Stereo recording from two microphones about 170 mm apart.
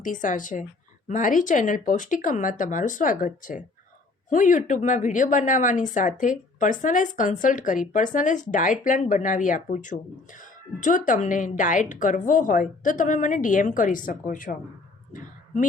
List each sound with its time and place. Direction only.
0.0 s a woman's voice: 50° left (ahead or behind)